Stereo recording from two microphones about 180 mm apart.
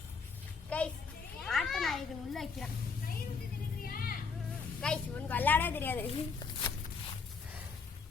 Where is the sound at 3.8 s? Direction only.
55° left (ahead or behind).